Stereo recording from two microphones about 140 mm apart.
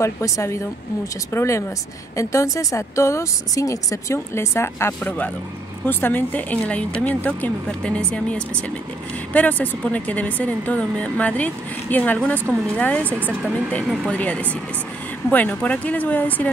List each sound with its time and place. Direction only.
0.0 s a woman's voice: 20° left (ahead or behind)
13.1 s speech: 10° right (ahead or behind)
14.1 s speech: 10° left (ahead or behind)